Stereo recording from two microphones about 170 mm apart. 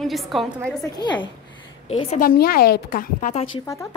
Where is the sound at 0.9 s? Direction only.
25° left (ahead or behind).